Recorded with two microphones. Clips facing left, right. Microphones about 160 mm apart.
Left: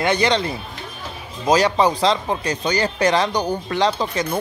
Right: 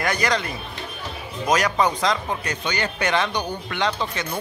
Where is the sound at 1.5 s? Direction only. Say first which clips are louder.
Left 4 dB; 30° left (ahead or behind).